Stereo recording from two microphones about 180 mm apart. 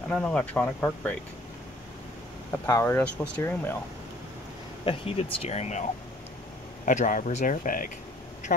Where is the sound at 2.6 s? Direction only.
15° left (ahead or behind).